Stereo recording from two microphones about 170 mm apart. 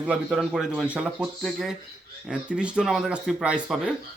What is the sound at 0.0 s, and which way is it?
Speech, 5° right (ahead or behind).